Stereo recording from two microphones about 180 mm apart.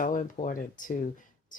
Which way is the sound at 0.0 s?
45° left (ahead or behind).